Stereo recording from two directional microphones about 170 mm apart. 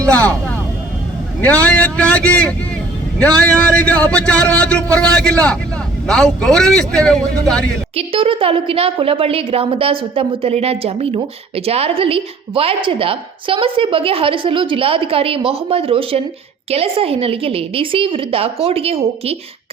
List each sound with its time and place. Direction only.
0.0 s a man's voice: 5° left (ahead or behind)
1.6 s a man's voice: 5° left (ahead or behind)
7.9 s a woman's voice: 35° right (ahead or behind)